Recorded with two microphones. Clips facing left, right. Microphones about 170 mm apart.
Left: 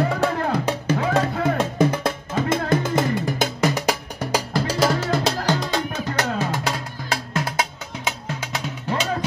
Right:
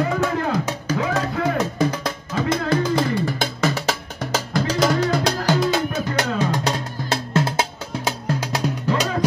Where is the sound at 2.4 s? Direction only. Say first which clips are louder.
Right 2 dB; 20° left (ahead or behind).